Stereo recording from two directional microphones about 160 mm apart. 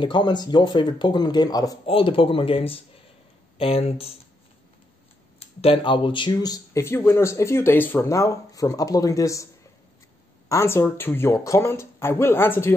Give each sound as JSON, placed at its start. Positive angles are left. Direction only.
{"t": 0.0, "sound": "speech", "side_deg": 30}
{"t": 1.9, "sound": "speech", "side_deg": 35}
{"t": 5.4, "sound": "speech", "side_deg": 40}
{"t": 10.5, "sound": "speech", "side_deg": 15}